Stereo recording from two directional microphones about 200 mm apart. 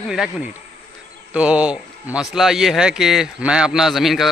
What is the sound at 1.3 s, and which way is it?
A man's voice, 5° right (ahead or behind).